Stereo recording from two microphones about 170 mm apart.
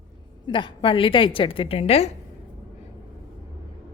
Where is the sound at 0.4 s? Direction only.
30° left (ahead or behind).